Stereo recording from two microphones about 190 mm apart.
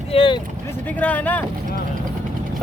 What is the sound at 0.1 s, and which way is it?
Vehicle, 30° left (ahead or behind).